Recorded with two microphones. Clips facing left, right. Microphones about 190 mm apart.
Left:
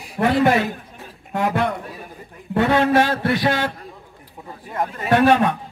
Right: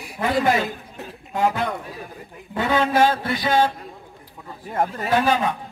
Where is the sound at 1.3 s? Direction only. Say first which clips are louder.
Left 1 dB; 65° left (ahead or behind).